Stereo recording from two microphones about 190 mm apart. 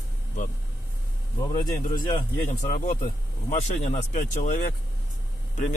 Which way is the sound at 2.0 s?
20° left (ahead or behind).